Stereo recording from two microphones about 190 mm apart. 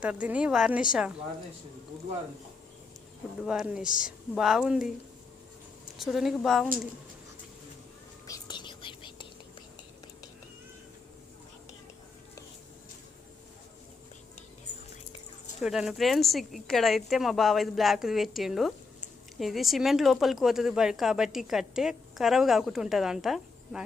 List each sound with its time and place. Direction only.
0.0 s speech: 5° right (ahead or behind)
3.4 s speech: 5° right (ahead or behind)
3.8 s speech: 45° left (ahead or behind)
4.4 s speech: centre (ahead or behind)
6.0 s speech: centre (ahead or behind)
8.3 s whispering: 20° left (ahead or behind)
15.6 s speech: centre (ahead or behind)